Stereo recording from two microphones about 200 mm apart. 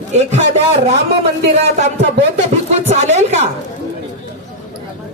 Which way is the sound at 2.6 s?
35° right (ahead or behind).